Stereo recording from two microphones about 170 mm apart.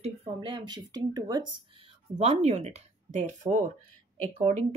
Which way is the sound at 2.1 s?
40° right (ahead or behind).